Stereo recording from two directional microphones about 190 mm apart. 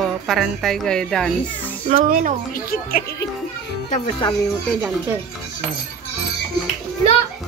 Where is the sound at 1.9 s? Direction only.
45° right (ahead or behind).